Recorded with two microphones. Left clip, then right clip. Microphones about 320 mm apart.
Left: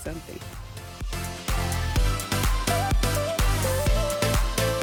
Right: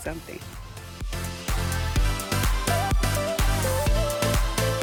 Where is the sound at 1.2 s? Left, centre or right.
Centre.